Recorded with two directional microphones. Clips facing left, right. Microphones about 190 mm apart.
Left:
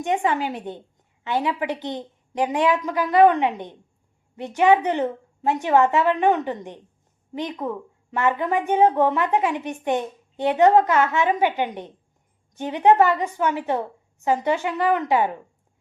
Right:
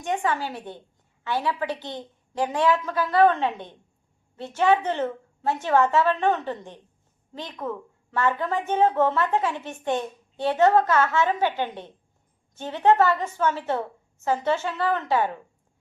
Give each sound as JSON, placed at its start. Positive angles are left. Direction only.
{"t": 0.0, "sound": "a woman's voice", "side_deg": 20}